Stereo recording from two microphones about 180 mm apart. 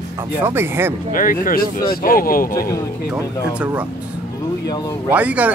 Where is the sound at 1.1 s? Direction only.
50° left (ahead or behind).